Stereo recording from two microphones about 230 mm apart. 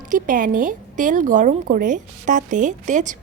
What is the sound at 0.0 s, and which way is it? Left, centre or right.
Speech, right.